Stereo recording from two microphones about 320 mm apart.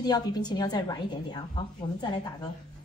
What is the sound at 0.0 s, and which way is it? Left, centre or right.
A woman's voice, centre.